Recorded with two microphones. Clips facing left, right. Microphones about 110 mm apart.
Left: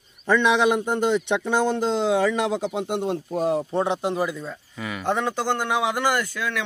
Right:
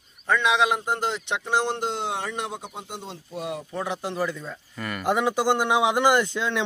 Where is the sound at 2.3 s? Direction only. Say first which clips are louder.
Left 9 dB; 90° left; by 3.2 s 65° left (ahead or behind).